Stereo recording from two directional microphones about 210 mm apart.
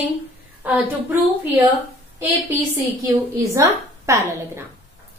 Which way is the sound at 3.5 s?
15° right (ahead or behind).